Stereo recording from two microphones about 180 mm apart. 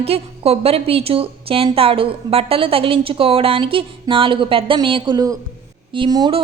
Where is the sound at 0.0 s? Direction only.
35° right (ahead or behind).